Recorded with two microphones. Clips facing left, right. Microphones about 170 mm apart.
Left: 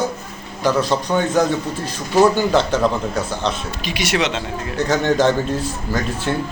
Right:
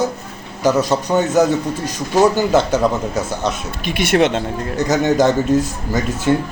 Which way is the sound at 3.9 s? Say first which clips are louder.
Right 6 dB; 55° right (ahead or behind).